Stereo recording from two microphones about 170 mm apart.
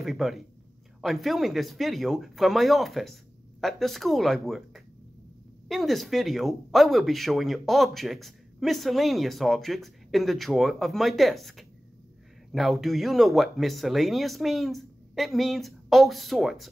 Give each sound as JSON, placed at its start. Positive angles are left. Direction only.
{"t": 0.0, "sound": "speech", "side_deg": 0}